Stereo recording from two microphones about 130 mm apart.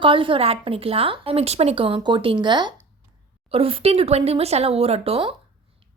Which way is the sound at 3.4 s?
45° right (ahead or behind).